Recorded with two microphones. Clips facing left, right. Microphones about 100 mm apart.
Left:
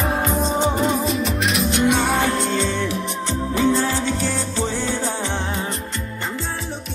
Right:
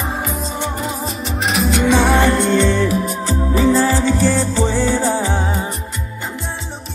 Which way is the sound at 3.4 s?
85° right.